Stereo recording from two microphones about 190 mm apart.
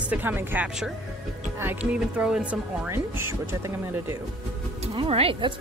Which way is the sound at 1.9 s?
5° right (ahead or behind).